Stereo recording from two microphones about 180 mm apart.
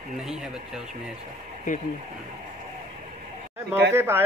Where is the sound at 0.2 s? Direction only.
5° right (ahead or behind).